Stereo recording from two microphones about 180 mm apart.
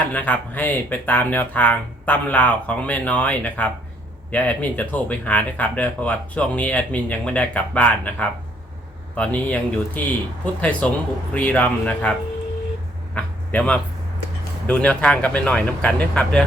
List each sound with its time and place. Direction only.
0.0 s speech: 10° left (ahead or behind)
13.1 s a sound: 5° left (ahead or behind)
14.7 s speech: 5° left (ahead or behind)